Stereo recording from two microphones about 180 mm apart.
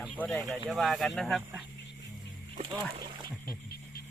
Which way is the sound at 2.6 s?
25° right (ahead or behind).